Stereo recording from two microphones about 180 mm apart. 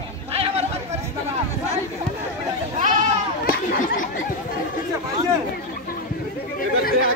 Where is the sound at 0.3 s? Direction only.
35° right (ahead or behind).